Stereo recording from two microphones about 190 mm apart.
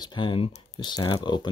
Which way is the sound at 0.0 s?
25° left (ahead or behind).